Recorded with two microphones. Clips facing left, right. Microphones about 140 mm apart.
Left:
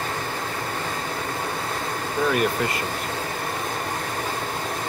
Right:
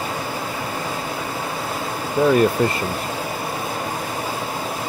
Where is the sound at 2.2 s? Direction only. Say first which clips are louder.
Right 7 dB; 10° right (ahead or behind).